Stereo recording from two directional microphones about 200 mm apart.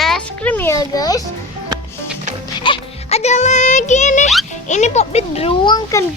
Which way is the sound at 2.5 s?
25° left (ahead or behind).